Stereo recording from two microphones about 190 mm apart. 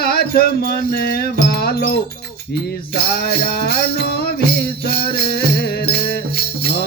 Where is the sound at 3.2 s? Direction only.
55° left (ahead or behind).